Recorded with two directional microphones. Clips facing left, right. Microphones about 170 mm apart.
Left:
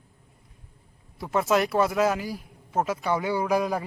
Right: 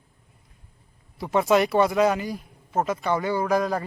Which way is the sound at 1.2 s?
Centre (ahead or behind).